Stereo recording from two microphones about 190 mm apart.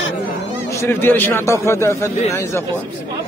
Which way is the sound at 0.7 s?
10° left (ahead or behind).